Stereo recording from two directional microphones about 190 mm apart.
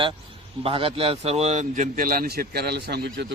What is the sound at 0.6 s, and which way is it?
A man's voice, 30° right (ahead or behind).